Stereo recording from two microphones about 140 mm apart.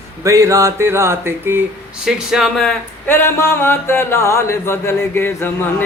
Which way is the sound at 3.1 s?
15° left (ahead or behind).